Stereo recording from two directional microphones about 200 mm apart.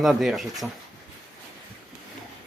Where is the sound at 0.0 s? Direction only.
Centre (ahead or behind).